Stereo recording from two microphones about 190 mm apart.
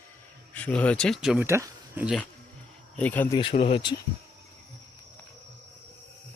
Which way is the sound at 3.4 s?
30° left (ahead or behind).